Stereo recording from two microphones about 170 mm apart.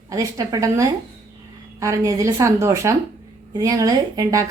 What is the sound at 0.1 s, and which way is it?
A woman's voice, 20° right (ahead or behind).